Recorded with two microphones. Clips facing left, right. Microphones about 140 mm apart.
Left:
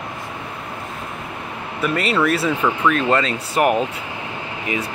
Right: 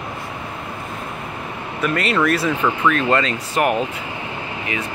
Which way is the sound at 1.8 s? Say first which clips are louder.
Even; 5° left (ahead or behind).